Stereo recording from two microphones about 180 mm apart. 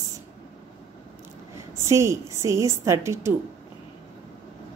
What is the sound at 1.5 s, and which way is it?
A woman's voice, 15° right (ahead or behind).